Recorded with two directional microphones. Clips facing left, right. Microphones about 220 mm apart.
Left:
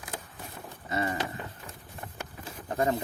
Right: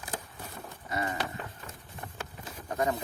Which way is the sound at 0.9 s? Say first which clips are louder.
Left 3 dB; 25° left (ahead or behind).